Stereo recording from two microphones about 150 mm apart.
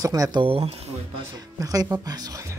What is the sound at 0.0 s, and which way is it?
Speech, 25° right (ahead or behind).